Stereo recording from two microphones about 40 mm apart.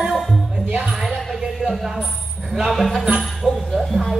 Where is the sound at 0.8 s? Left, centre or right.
Centre.